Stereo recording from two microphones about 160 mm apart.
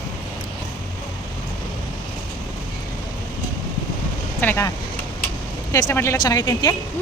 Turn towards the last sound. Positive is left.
turn(degrees=20)  # may be behind; listen again after turning